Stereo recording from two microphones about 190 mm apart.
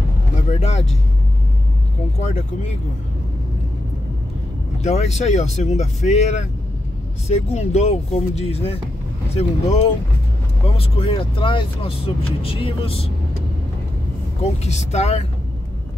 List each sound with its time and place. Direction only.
0.5 s speech: 35° left (ahead or behind)
4.8 s speech: 35° left (ahead or behind)
10.8 s speech: 30° left (ahead or behind)
14.4 s speech: 35° left (ahead or behind)